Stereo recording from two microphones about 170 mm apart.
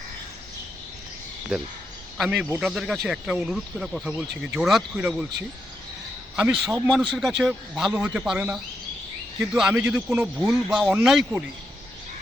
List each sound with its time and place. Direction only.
2.1 s speech: centre (ahead or behind)
6.3 s a man's voice: 5° right (ahead or behind)